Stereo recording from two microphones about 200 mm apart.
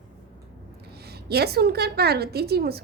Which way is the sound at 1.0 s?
55° right (ahead or behind).